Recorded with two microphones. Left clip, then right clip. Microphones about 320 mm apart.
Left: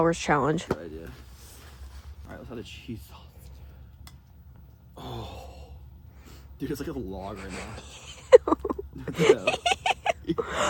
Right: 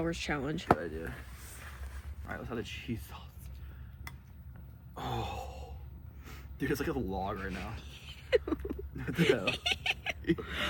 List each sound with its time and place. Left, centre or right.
0.1 s speech: centre
0.8 s speech: centre
1.5 s a sound: centre
2.2 s speech: centre
4.9 s speech: centre